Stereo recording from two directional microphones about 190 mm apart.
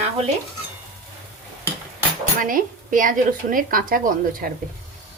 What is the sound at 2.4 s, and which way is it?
Speech, 45° right (ahead or behind).